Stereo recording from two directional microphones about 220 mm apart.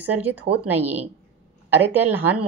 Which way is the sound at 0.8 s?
30° right (ahead or behind).